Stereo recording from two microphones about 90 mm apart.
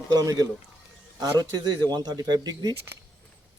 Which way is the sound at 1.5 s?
55° right (ahead or behind).